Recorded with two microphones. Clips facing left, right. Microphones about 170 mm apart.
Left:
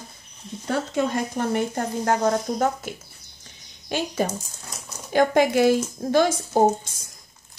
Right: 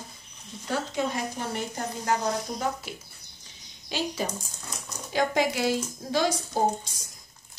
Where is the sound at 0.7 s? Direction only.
55° left (ahead or behind).